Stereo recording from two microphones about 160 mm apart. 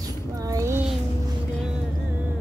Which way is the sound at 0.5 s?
20° right (ahead or behind).